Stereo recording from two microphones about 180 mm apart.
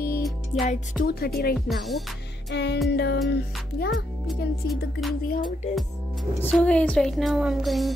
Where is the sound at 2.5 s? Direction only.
75° left (ahead or behind).